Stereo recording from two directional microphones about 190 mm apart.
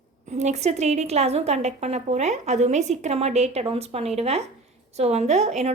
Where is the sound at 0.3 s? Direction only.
35° right (ahead or behind).